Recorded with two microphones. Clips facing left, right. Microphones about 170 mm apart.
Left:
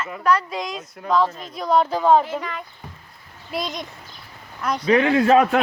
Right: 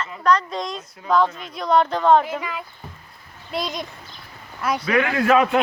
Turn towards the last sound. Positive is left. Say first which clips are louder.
# left 3 dB
turn(degrees=25)  # may be behind; listen again after turning